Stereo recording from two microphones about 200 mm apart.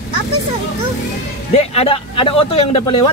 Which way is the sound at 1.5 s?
30° left (ahead or behind).